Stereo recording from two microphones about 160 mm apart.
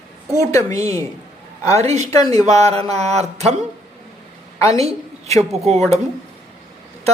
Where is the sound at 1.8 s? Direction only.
45° right (ahead or behind).